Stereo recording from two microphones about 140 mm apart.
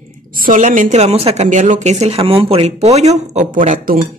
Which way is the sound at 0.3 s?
80° right.